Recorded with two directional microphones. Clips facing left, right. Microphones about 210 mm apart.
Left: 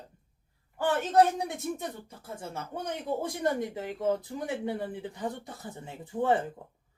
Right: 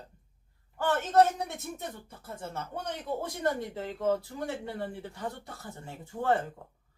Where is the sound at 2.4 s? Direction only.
10° left (ahead or behind).